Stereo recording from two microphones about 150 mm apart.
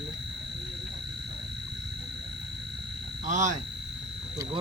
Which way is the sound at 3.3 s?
55° right (ahead or behind).